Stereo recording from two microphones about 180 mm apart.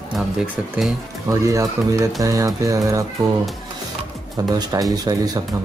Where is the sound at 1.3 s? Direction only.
15° right (ahead or behind).